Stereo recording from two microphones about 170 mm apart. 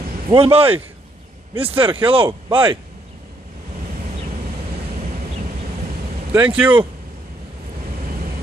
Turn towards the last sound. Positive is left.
turn(degrees=-10)  # may be behind; listen again after turning